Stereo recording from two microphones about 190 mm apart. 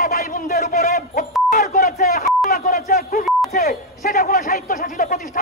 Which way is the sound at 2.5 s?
50° left (ahead or behind).